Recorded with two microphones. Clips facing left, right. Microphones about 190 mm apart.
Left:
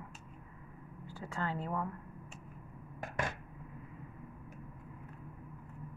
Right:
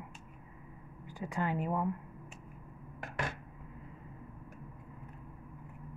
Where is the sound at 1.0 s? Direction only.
15° right (ahead or behind).